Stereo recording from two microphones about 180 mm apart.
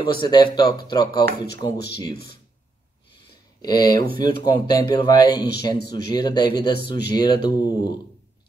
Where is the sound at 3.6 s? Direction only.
20° left (ahead or behind).